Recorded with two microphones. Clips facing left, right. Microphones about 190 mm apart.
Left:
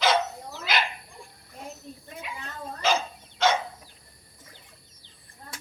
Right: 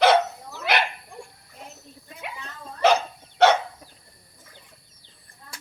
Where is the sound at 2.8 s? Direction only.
65° right (ahead or behind).